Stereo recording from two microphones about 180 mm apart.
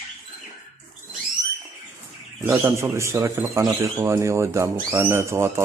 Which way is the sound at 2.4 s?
15° right (ahead or behind).